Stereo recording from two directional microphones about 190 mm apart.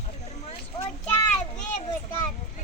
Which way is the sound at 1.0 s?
10° left (ahead or behind).